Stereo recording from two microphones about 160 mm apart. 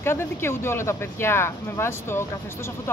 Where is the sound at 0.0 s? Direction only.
15° left (ahead or behind).